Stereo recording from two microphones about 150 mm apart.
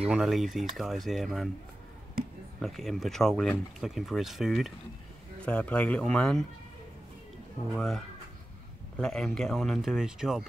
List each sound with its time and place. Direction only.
0.1 s speech: centre (ahead or behind)
2.6 s speech: centre (ahead or behind)
7.7 s speech: centre (ahead or behind)